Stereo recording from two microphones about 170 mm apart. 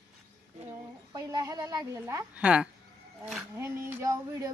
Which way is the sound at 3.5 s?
15° right (ahead or behind).